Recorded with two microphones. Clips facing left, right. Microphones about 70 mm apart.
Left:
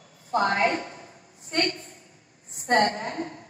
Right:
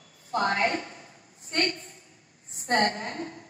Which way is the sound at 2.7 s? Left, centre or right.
Left.